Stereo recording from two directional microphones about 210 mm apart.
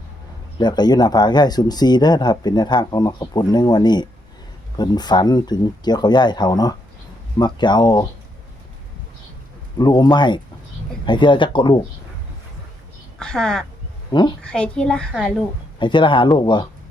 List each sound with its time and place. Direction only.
0.6 s speech: 20° left (ahead or behind)
9.7 s speech: 20° left (ahead or behind)
13.1 s speech: 5° left (ahead or behind)
14.1 s speech: 20° left (ahead or behind)
14.4 s a child's voice: 5° left (ahead or behind)
15.8 s speech: 25° left (ahead or behind)